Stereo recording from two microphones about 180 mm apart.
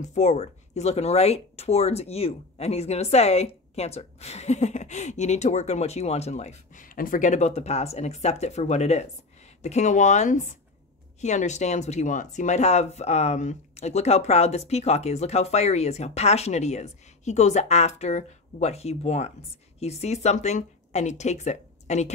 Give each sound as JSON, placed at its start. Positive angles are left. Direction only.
{"t": 0.0, "sound": "speech", "side_deg": 40}